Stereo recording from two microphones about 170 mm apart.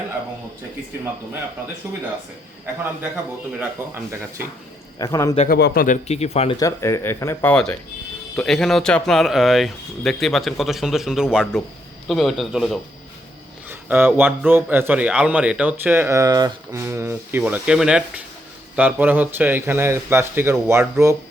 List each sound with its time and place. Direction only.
3.6 s a man's voice: 15° right (ahead or behind)
4.9 s a man's voice: 20° left (ahead or behind)
5.5 s a man's voice: 70° left (ahead or behind)
6.1 s speech: 40° left (ahead or behind)
6.6 s a man's voice: 20° left (ahead or behind); by 21.2 s 15° right (ahead or behind)